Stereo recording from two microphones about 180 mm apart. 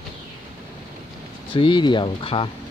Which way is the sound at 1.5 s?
25° left (ahead or behind).